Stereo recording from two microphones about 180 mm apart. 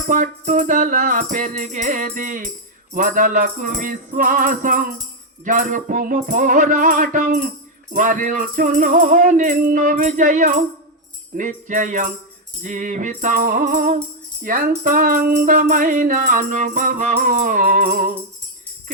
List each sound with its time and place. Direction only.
0.1 s music: 45° right (ahead or behind)